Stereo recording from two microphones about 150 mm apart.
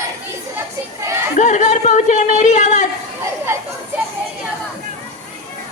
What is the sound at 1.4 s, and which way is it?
Speech, 50° left (ahead or behind).